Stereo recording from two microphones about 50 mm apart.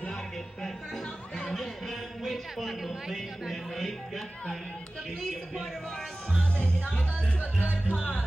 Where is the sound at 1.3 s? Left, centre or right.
Centre.